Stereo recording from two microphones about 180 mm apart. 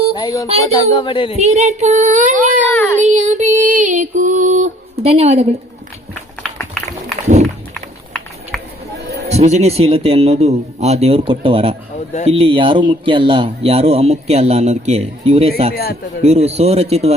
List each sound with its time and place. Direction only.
0.1 s music: 20° left (ahead or behind)
0.6 s speech: 20° left (ahead or behind)
1.4 s child singing: 40° right (ahead or behind)
2.6 s child singing: 10° left (ahead or behind)
3.0 s music: 40° right (ahead or behind)
8.5 s a sound: centre (ahead or behind)
9.3 s speech: 35° right (ahead or behind)
15.7 s a man's voice: 60° left (ahead or behind)
16.2 s speech: 35° right (ahead or behind)